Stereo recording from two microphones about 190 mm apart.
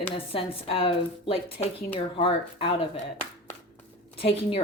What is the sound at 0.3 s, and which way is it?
Speech, 30° left (ahead or behind).